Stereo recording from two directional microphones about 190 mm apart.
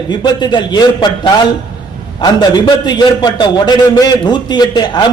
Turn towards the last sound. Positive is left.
turn(degrees=20)  # may be behind; listen again after turning